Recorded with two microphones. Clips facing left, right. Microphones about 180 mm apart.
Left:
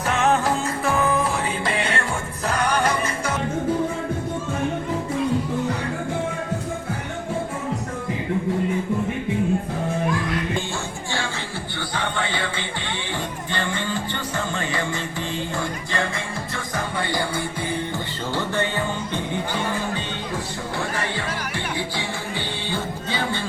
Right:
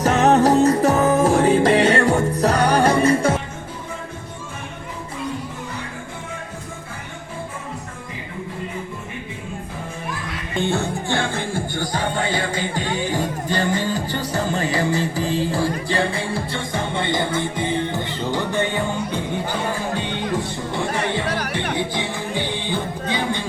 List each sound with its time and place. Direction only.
0.0 s music: 40° right (ahead or behind)
10.6 s music: 60° right (ahead or behind); by 18.7 s 15° right (ahead or behind)
21.8 s music: 15° right (ahead or behind)